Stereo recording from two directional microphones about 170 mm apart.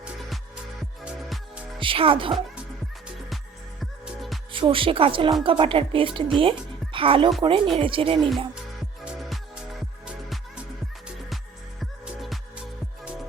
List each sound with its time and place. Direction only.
0.0 s music: 5° right (ahead or behind)
1.8 s a woman's voice: 30° right (ahead or behind)
3.8 s music: centre (ahead or behind)
4.5 s a woman's voice: 30° right (ahead or behind)
9.0 s music: centre (ahead or behind)
11.8 s music: centre (ahead or behind)